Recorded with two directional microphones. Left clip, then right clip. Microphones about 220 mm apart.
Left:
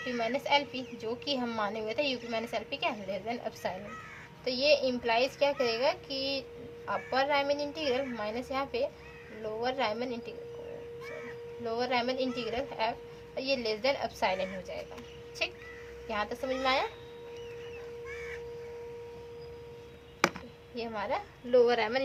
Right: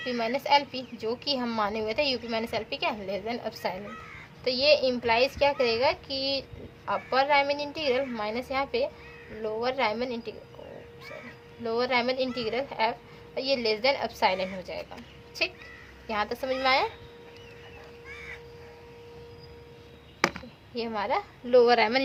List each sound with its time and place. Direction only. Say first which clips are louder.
0.1 s a woman's voice: right 5 dB; 35° right (ahead or behind)
11.6 s a woman's voice: right 5 dB; 35° right (ahead or behind)
16.0 s a woman's voice: right 4 dB; 35° right (ahead or behind)
20.2 s a sound: right 2 dB; 5° left (ahead or behind)
20.7 s a woman's voice: right 5 dB; 35° right (ahead or behind)